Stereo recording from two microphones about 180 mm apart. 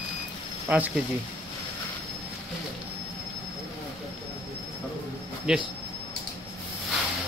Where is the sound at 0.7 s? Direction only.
10° right (ahead or behind).